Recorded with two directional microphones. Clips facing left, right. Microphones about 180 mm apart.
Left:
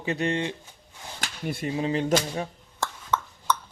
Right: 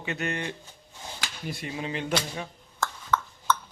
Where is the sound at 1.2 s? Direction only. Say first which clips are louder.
Left 6 dB; 50° left (ahead or behind).